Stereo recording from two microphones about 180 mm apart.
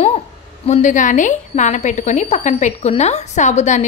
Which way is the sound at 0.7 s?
45° left (ahead or behind).